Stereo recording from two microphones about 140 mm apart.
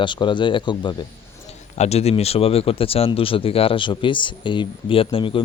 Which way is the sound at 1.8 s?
50° left (ahead or behind).